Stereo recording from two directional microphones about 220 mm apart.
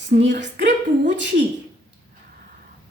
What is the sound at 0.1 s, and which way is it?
Speech, 50° right (ahead or behind).